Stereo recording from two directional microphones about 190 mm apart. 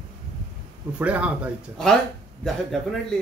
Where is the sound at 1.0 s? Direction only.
5° right (ahead or behind).